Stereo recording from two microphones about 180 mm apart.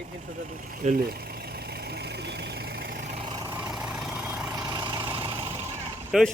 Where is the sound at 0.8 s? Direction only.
55° right (ahead or behind).